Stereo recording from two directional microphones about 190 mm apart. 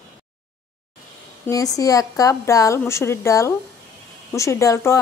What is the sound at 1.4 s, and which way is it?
Speech, 20° left (ahead or behind).